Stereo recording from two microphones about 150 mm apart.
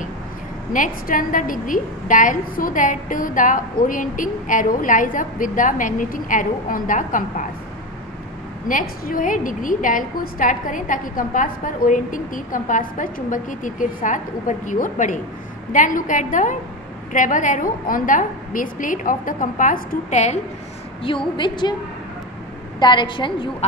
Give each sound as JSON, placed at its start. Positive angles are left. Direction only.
{"t": 0.7, "sound": "a woman's voice", "side_deg": 65}
{"t": 8.6, "sound": "a woman's voice", "side_deg": 65}
{"t": 21.0, "sound": "a woman's voice", "side_deg": 35}
{"t": 22.8, "sound": "a woman's voice", "side_deg": 30}